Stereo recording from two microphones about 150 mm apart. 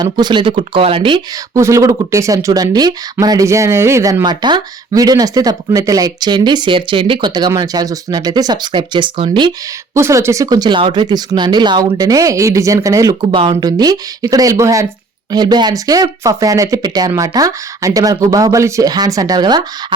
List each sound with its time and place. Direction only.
0.0 s speech: 30° right (ahead or behind)
1.5 s speech: 20° right (ahead or behind)
9.9 s speech: 20° right (ahead or behind)
13.3 s speech: 35° right (ahead or behind)